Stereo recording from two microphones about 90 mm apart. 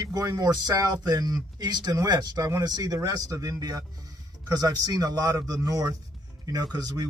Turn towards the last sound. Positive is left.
turn(degrees=-50)  # may be behind; listen again after turning